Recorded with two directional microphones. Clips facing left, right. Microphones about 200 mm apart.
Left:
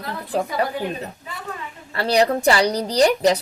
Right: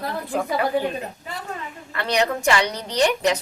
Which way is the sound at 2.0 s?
35° left (ahead or behind).